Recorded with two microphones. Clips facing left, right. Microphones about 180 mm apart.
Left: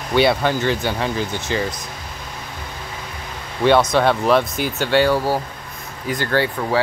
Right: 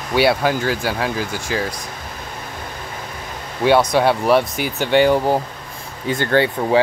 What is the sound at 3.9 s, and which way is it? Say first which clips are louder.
Speech: right 1 dB; 15° right (ahead or behind).